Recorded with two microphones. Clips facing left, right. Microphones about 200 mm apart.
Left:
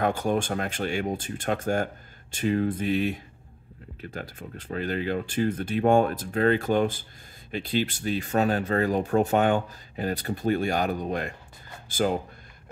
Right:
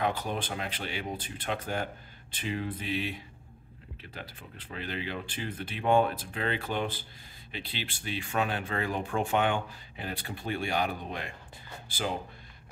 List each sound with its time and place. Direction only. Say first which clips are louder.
0.0 s speech: left 6 dB; 45° left (ahead or behind)